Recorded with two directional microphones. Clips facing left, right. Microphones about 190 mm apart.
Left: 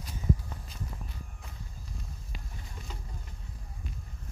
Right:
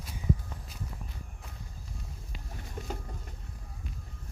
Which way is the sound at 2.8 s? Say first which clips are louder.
Right 9 dB; 50° right (ahead or behind).